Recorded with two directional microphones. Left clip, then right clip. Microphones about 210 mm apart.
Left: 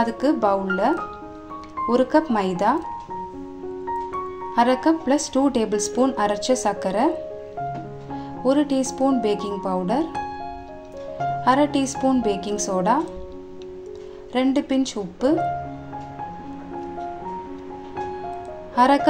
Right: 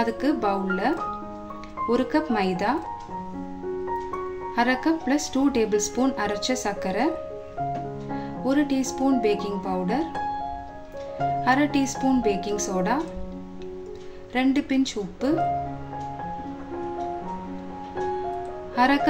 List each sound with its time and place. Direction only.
0.0 s a woman's voice: 5° left (ahead or behind)
4.6 s speech: 5° left (ahead or behind)
8.5 s speech: 5° left (ahead or behind)
11.4 s speech: 5° left (ahead or behind)
14.3 s a woman's voice: 5° left (ahead or behind)
18.8 s a woman's voice: 5° left (ahead or behind)